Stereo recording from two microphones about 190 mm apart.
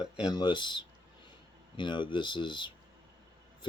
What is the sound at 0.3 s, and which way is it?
Speech, 25° left (ahead or behind).